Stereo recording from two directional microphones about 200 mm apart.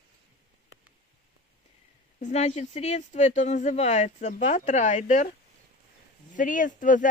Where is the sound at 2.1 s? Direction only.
35° left (ahead or behind).